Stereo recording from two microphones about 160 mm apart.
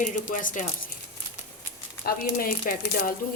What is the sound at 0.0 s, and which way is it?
Speech, 55° left (ahead or behind).